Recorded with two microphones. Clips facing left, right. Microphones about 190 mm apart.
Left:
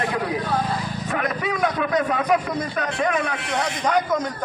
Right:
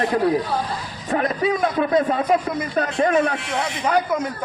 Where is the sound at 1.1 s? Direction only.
30° right (ahead or behind).